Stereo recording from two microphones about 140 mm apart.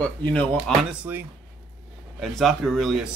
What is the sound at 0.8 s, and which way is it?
Speech, 10° right (ahead or behind).